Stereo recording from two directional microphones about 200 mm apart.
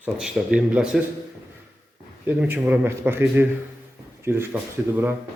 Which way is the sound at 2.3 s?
10° right (ahead or behind).